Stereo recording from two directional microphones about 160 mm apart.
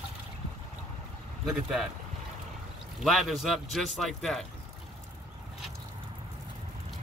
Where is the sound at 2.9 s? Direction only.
Centre (ahead or behind).